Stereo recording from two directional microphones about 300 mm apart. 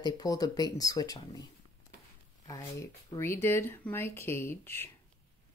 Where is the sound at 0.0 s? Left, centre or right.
Centre.